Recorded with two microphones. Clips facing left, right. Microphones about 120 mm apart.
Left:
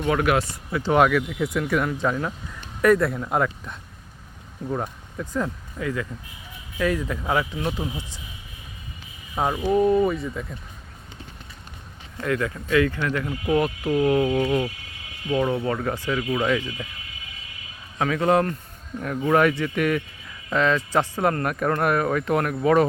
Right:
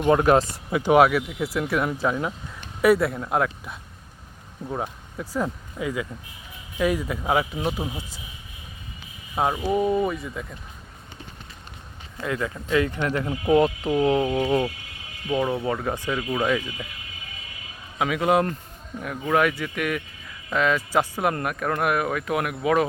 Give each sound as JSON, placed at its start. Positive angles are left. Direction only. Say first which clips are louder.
{"t": 0.1, "sound": "speech", "louder": "right 4 dB", "side_deg": -30}
{"t": 0.7, "sound": "speech", "louder": "right 2 dB", "side_deg": -15}
{"t": 9.3, "sound": "speech", "louder": "left 1 dB", "side_deg": -5}
{"t": 12.2, "sound": "speech", "louder": "left 3 dB", "side_deg": -15}
{"t": 14.3, "sound": "speech", "louder": "even", "side_deg": -5}
{"t": 17.9, "sound": "speech", "louder": "left 1 dB", "side_deg": -10}
{"t": 18.9, "sound": "speech", "louder": "left 2 dB", "side_deg": 0}